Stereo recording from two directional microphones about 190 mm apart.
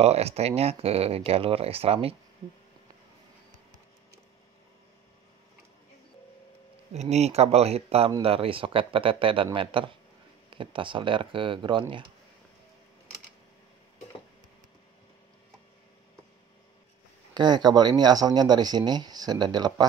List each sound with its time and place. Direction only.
0.0 s speech: 35° right (ahead or behind)
6.9 s speech: 35° right (ahead or behind)
17.3 s speech: 25° right (ahead or behind)